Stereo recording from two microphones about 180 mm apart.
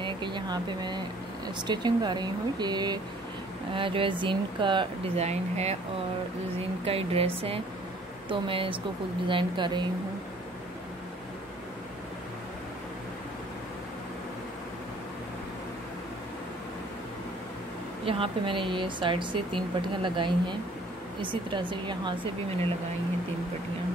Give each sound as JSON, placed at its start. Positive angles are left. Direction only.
{"t": 0.0, "sound": "speech", "side_deg": -25}
{"t": 6.8, "sound": "speech", "side_deg": -35}
{"t": 18.0, "sound": "speech", "side_deg": -30}